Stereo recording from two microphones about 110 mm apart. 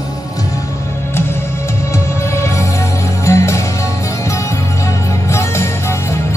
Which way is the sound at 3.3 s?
25° left (ahead or behind).